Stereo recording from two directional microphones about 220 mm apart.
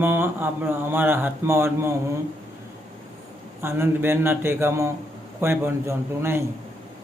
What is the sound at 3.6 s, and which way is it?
A man's voice, 10° right (ahead or behind).